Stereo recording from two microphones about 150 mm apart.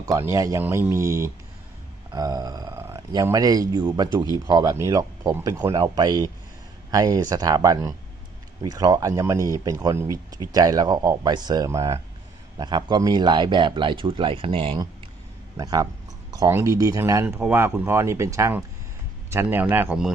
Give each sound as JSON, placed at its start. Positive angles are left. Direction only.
{"t": 0.0, "sound": "a man's voice", "side_deg": -20}
{"t": 15.5, "sound": "speech", "side_deg": -25}